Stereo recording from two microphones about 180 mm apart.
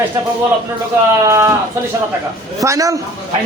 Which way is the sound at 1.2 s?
15° right (ahead or behind).